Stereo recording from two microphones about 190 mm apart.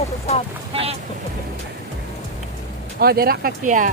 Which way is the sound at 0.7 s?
30° right (ahead or behind).